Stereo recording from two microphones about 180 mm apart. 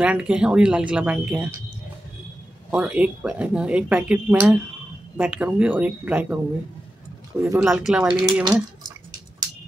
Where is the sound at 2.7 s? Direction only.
5° right (ahead or behind).